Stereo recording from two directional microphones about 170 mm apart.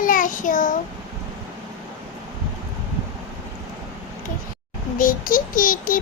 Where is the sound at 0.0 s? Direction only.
50° left (ahead or behind).